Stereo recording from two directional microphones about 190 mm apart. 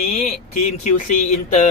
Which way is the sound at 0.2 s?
35° left (ahead or behind).